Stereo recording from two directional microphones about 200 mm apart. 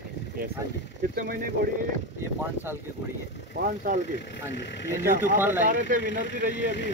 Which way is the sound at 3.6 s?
45° right (ahead or behind).